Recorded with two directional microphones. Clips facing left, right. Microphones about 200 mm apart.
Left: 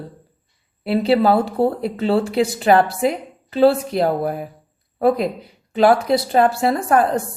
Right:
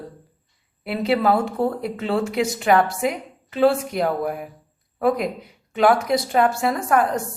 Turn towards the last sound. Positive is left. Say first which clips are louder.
# left 3 dB
turn(degrees=30)  # may be behind; listen again after turning